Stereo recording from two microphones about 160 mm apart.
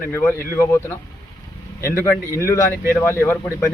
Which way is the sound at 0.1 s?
15° left (ahead or behind).